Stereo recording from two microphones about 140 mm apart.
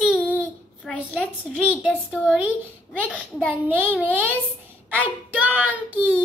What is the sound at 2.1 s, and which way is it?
A child's voice, 10° right (ahead or behind).